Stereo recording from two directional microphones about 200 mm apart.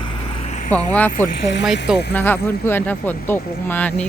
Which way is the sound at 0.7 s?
10° left (ahead or behind).